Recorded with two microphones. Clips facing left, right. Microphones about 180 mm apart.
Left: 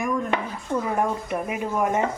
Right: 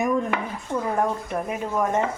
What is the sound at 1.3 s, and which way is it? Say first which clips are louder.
Speech: even; 10° left (ahead or behind).